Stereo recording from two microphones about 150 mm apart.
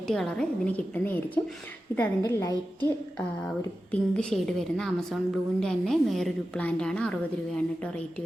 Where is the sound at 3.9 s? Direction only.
5° left (ahead or behind).